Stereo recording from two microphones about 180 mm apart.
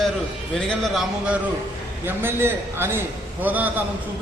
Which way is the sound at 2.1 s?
10° right (ahead or behind).